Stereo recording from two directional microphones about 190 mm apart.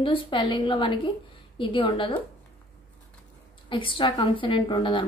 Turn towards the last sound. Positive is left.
turn(degrees=25)  # may be behind; listen again after turning